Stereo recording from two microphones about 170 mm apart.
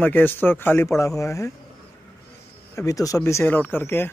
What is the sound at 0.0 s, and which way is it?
A man's voice, 10° left (ahead or behind).